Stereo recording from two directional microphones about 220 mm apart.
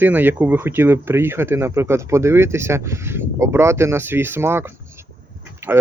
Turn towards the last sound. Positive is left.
turn(degrees=-10)  # may be behind; listen again after turning